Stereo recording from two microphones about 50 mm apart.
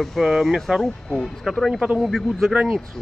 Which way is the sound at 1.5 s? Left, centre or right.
Centre.